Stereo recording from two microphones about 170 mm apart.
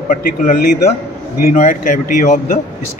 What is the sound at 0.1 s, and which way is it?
Speech, 50° left (ahead or behind).